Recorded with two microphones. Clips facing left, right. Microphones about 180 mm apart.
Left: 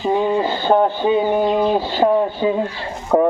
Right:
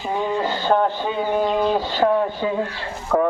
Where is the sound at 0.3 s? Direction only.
15° left (ahead or behind).